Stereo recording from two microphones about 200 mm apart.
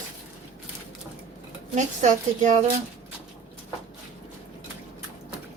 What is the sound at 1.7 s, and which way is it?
Speech, 40° right (ahead or behind).